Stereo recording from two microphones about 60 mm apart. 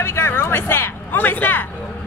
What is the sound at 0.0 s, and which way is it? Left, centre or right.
Speech, left.